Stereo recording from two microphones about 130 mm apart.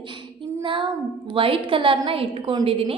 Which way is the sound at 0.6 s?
40° right (ahead or behind).